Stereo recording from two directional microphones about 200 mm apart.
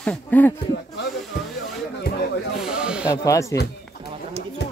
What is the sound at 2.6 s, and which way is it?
Snake, 5° right (ahead or behind).